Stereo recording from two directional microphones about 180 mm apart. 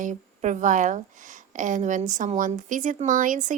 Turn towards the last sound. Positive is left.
turn(degrees=-45)  # may be behind; listen again after turning